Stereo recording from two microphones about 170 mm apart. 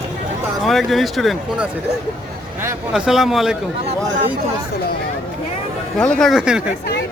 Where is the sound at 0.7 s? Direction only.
Centre (ahead or behind).